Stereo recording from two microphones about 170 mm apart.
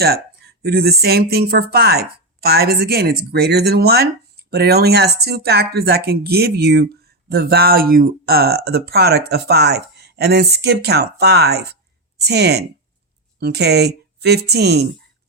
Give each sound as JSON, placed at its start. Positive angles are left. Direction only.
{"t": 0.0, "sound": "speech", "side_deg": -65}